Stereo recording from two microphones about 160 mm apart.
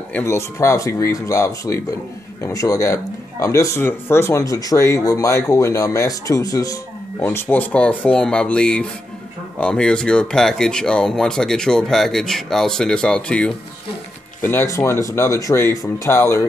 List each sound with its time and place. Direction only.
0.1 s speech: 15° left (ahead or behind)